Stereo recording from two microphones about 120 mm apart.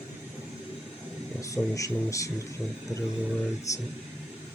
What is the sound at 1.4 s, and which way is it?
Speech, 25° left (ahead or behind).